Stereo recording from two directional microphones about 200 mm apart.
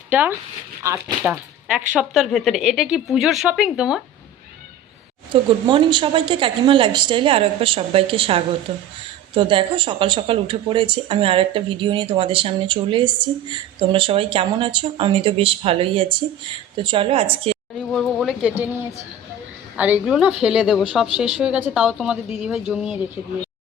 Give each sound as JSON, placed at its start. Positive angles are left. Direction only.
{"t": 0.1, "sound": "a woman's voice", "side_deg": -10}
{"t": 5.3, "sound": "speech", "side_deg": -25}
{"t": 17.9, "sound": "a woman's voice", "side_deg": 0}